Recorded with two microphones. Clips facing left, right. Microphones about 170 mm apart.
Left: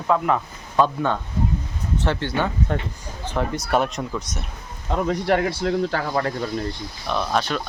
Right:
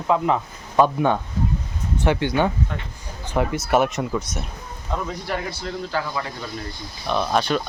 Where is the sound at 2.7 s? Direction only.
45° left (ahead or behind).